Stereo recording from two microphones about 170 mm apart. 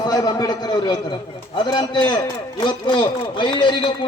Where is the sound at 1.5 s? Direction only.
25° left (ahead or behind).